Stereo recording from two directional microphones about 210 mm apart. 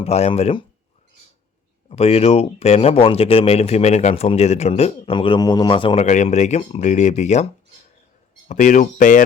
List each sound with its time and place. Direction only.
0.0 s speech: 30° left (ahead or behind)
1.9 s speech: 30° left (ahead or behind)
8.4 s speech: 35° left (ahead or behind)